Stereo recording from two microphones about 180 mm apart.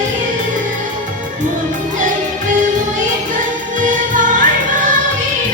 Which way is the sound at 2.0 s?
45° right (ahead or behind).